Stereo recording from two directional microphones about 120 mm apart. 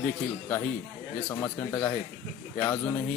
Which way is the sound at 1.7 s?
25° left (ahead or behind).